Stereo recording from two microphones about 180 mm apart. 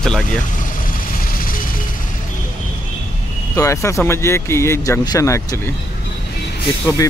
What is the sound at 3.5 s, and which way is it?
Speech, 15° left (ahead or behind).